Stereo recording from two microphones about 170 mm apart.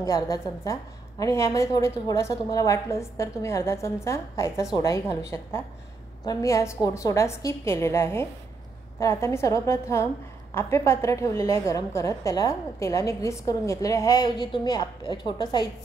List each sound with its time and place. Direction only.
0.0 s a woman's voice: 20° left (ahead or behind)